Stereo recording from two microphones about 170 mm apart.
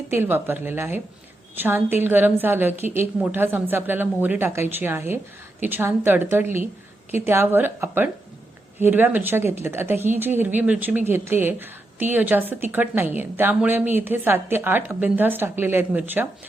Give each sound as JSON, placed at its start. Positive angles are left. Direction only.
{"t": 0.1, "sound": "speech", "side_deg": -10}